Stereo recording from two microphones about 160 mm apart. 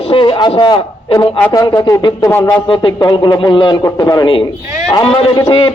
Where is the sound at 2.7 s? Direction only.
30° left (ahead or behind).